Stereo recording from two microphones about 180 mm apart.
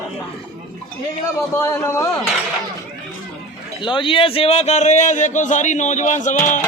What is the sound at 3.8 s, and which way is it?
A man's voice, 30° left (ahead or behind).